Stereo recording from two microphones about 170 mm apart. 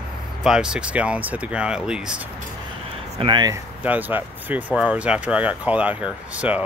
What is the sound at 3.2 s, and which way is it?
Speech, 25° right (ahead or behind).